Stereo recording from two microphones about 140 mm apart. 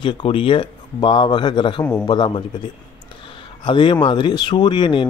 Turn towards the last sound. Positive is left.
turn(degrees=35)  # may be behind; listen again after turning